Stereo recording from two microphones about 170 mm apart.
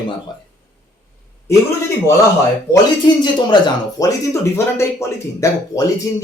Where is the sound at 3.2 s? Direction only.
25° left (ahead or behind).